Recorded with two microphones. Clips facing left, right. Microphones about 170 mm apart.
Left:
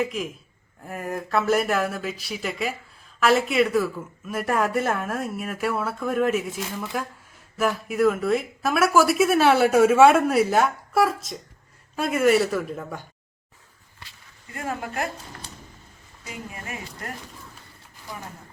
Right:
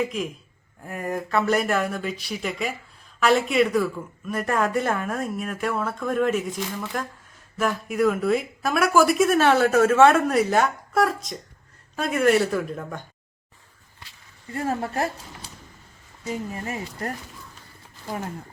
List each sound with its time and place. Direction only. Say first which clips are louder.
0.0 s speech: even; centre (ahead or behind)
14.5 s speech: right 4 dB; 35° right (ahead or behind)
16.2 s speech: right 7 dB; 35° right (ahead or behind)